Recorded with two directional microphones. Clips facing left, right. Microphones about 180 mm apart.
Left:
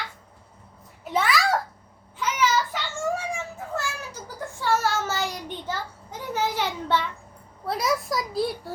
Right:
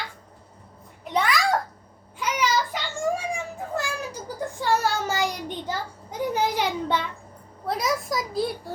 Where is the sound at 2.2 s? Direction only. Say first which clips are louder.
Left 1 dB; 15° right (ahead or behind).